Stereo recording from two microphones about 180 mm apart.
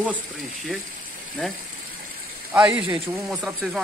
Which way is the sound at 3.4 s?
5° right (ahead or behind).